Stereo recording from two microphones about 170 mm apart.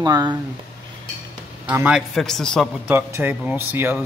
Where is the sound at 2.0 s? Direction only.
Centre (ahead or behind).